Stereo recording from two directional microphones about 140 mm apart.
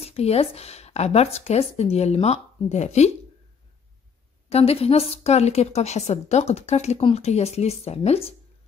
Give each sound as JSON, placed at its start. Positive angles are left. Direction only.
{"t": 0.0, "sound": "a woman's voice", "side_deg": 50}
{"t": 4.5, "sound": "a woman's voice", "side_deg": 45}